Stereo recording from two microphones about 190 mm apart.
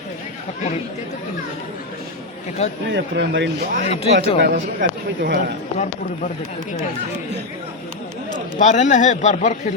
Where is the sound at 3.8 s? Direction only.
35° left (ahead or behind).